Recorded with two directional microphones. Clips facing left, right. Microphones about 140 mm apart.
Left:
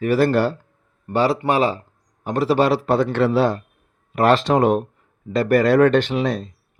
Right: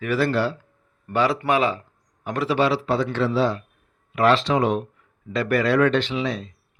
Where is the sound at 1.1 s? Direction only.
35° left (ahead or behind).